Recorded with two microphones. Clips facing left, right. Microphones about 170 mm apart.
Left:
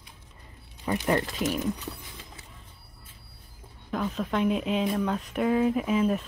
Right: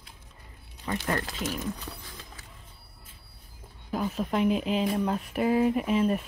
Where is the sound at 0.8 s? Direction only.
20° left (ahead or behind).